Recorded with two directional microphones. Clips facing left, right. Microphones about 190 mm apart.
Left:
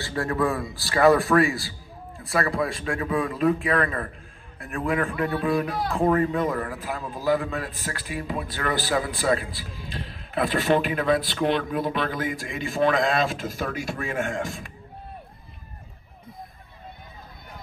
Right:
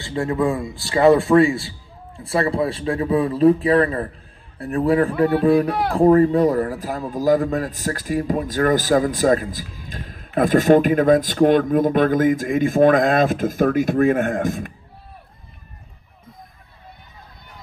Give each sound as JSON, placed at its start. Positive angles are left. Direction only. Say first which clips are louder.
{"t": 0.0, "sound": "a man's voice", "louder": "right 4 dB", "side_deg": -20}